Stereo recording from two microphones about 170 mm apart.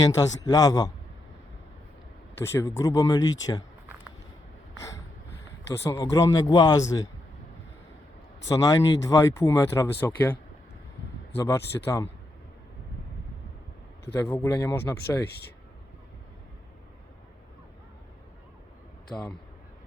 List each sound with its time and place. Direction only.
0.1 s speech: 20° left (ahead or behind)
2.4 s speech: 15° left (ahead or behind)
5.7 s speech: 15° left (ahead or behind)
8.4 s speech: 20° left (ahead or behind)
11.3 s speech: 15° left (ahead or behind)
14.0 s speech: 15° left (ahead or behind)